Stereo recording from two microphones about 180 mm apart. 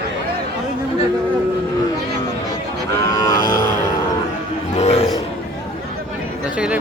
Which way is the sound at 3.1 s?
20° left (ahead or behind).